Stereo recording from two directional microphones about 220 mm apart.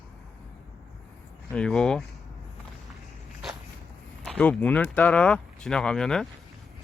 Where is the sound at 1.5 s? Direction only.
5° left (ahead or behind).